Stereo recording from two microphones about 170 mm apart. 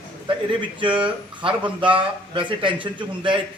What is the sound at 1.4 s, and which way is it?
A man's voice, 30° right (ahead or behind).